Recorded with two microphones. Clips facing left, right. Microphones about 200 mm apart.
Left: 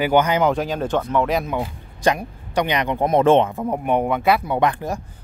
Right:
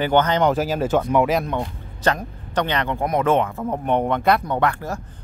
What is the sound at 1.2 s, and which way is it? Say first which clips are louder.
Speech: even; centre (ahead or behind).